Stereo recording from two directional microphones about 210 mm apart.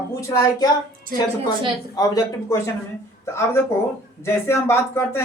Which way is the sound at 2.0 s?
15° left (ahead or behind).